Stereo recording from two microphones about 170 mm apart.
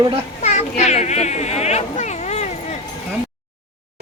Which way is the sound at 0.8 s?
40° left (ahead or behind).